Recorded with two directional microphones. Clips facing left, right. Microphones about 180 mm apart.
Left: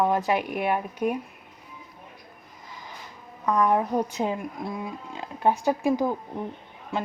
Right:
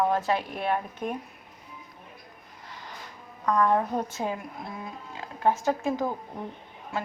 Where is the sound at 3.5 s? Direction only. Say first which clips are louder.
Left 2 dB; 15° left (ahead or behind).